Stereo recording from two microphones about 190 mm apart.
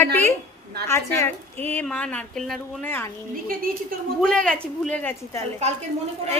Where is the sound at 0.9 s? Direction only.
10° left (ahead or behind).